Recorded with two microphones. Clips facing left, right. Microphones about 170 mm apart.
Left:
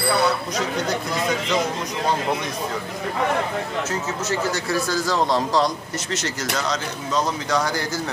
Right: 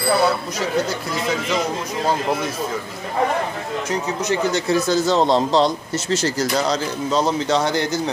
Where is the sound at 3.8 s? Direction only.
15° right (ahead or behind).